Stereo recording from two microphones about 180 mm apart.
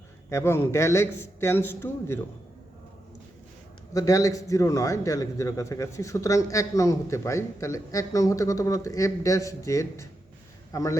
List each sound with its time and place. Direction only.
0.3 s a man's voice: 15° left (ahead or behind)
3.9 s a man's voice: 20° left (ahead or behind)